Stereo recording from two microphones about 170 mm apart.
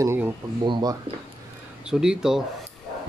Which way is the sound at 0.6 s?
25° right (ahead or behind).